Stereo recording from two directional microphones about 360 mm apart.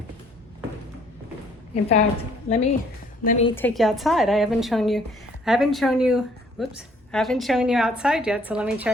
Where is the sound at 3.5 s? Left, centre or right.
Centre.